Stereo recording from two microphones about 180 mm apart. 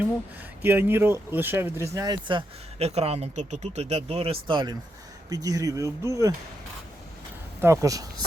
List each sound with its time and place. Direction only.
0.6 s speech: 10° right (ahead or behind)
7.6 s speech: 15° right (ahead or behind)